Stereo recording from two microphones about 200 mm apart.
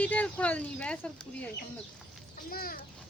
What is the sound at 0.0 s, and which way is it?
Speech, 5° left (ahead or behind).